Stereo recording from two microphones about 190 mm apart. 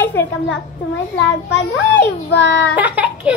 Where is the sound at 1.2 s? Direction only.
70° left (ahead or behind).